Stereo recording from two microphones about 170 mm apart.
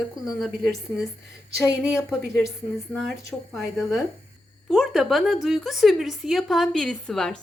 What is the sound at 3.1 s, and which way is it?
A woman's voice, centre (ahead or behind).